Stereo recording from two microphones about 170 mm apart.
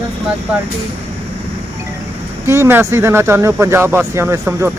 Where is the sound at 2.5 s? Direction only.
15° right (ahead or behind).